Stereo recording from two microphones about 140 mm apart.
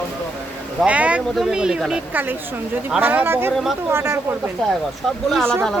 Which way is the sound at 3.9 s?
15° right (ahead or behind).